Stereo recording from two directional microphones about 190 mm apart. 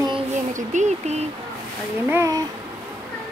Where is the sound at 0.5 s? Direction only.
40° right (ahead or behind).